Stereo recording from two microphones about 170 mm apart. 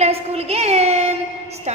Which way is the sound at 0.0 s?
35° right (ahead or behind).